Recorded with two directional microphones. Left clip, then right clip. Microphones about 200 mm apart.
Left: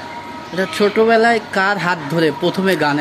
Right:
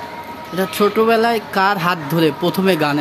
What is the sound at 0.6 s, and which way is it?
Speech, 15° right (ahead or behind).